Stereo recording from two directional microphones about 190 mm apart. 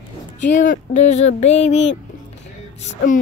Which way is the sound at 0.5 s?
40° left (ahead or behind).